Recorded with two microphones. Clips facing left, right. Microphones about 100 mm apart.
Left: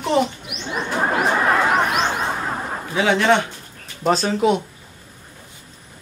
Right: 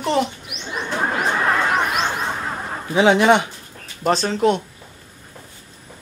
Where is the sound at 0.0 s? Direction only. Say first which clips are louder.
Left 1 dB; centre (ahead or behind).